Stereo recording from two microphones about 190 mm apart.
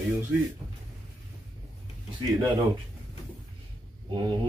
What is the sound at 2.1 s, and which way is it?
Speech, 25° right (ahead or behind).